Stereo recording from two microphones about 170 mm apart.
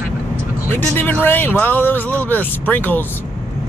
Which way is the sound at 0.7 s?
10° left (ahead or behind).